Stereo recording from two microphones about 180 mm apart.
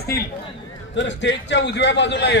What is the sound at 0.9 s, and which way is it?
A man's voice, 90° left.